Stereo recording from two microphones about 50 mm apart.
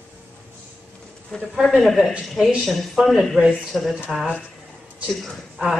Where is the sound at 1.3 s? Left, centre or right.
Centre.